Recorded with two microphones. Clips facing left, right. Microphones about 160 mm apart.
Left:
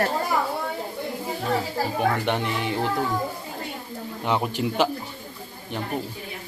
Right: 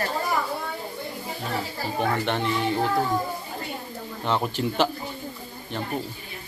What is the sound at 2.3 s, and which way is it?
Speech, 15° left (ahead or behind).